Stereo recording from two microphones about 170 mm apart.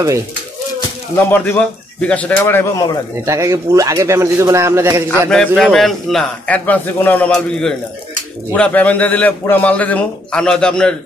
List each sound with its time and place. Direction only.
1.1 s a man's voice: 10° left (ahead or behind)
3.3 s speech: 20° right (ahead or behind)
5.6 s a man's voice: centre (ahead or behind)